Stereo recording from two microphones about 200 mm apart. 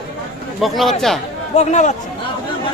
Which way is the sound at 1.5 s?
35° left (ahead or behind).